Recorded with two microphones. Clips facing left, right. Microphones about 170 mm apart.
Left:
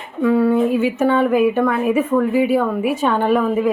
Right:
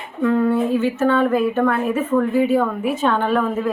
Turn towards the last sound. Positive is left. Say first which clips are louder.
# left 3 dB
turn(degrees=10)  # may be behind; listen again after turning